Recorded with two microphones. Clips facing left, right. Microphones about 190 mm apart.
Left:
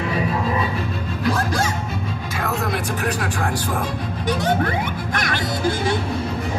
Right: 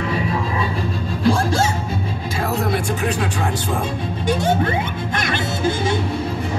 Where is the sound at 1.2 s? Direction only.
30° right (ahead or behind).